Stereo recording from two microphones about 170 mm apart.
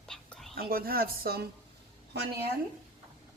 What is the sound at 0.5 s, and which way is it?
Speech, 60° right (ahead or behind).